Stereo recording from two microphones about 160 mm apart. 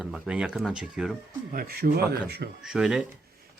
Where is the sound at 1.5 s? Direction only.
70° right (ahead or behind); by 2.4 s 90° right.